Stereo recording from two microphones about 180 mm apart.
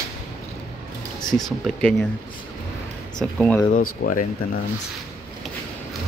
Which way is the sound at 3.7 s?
50° left (ahead or behind).